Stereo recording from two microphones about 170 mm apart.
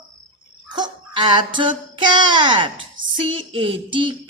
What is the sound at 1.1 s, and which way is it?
Speech, 25° right (ahead or behind).